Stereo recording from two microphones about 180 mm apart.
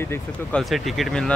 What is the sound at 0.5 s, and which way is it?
Speech, centre (ahead or behind).